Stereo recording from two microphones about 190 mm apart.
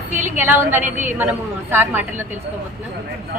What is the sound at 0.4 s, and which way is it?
Speech, 10° right (ahead or behind).